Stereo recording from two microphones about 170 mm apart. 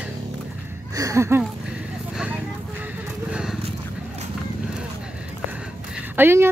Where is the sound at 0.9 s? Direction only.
20° right (ahead or behind).